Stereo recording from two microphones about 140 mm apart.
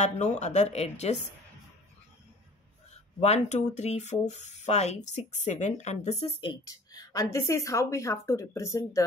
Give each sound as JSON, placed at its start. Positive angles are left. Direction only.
{"t": 0.0, "sound": "a woman's voice", "side_deg": 55}
{"t": 3.2, "sound": "speech", "side_deg": 50}
{"t": 6.4, "sound": "speech", "side_deg": 30}